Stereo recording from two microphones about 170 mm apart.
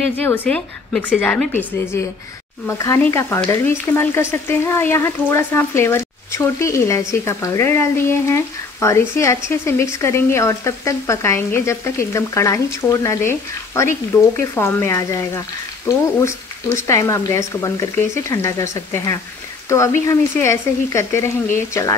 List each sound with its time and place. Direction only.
0.0 s speech: 10° left (ahead or behind)
3.0 s speech: 15° left (ahead or behind)